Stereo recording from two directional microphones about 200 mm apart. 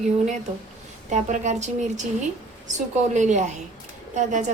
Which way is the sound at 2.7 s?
35° right (ahead or behind).